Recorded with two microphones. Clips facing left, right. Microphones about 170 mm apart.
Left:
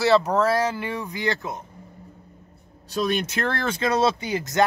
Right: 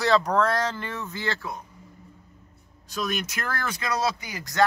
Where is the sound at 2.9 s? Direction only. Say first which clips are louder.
Left 6 dB; 30° left (ahead or behind).